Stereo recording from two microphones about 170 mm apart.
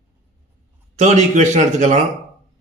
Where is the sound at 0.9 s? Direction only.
45° right (ahead or behind).